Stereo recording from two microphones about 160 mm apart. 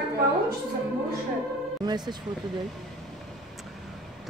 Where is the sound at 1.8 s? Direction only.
25° right (ahead or behind).